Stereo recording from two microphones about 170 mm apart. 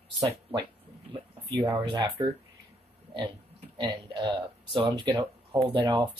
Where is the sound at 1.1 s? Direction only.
25° right (ahead or behind).